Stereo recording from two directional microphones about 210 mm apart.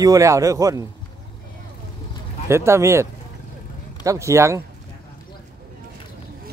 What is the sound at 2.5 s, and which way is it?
Speech, 15° right (ahead or behind).